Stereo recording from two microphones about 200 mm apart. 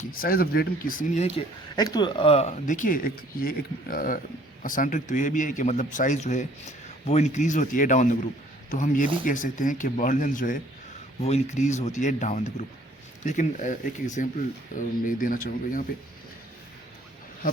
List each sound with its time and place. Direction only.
0.1 s speech: 45° left (ahead or behind)
1.7 s speech: 20° left (ahead or behind); by 15.8 s 45° left (ahead or behind)